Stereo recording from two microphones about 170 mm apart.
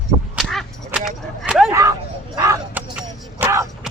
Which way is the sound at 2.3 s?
20° right (ahead or behind).